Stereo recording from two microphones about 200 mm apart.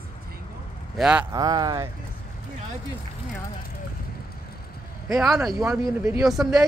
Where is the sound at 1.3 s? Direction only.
20° right (ahead or behind).